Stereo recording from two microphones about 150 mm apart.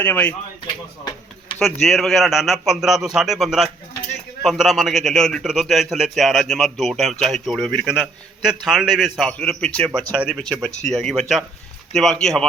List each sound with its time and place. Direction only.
0.0 s speech: 10° left (ahead or behind)
1.5 s a man's voice: centre (ahead or behind)